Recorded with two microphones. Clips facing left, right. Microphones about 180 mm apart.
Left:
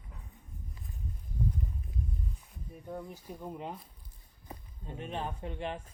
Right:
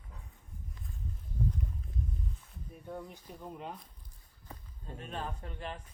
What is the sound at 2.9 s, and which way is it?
Speech, 5° left (ahead or behind).